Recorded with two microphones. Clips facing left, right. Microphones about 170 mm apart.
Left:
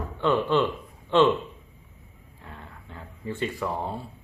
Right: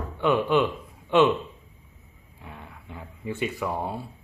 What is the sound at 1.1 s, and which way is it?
Speech, 10° right (ahead or behind).